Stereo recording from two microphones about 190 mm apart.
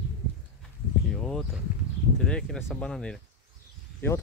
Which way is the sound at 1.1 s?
Centre (ahead or behind).